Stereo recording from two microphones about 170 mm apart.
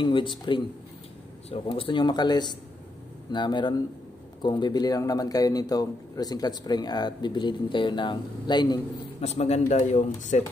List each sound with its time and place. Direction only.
0.0 s a man's voice: 30° left (ahead or behind)
9.2 s speech: 40° left (ahead or behind)